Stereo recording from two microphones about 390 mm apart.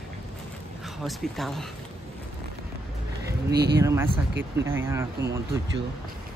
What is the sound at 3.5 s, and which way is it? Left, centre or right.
Speech, right.